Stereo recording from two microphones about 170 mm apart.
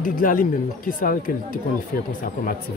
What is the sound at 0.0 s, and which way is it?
Speech, 55° left (ahead or behind).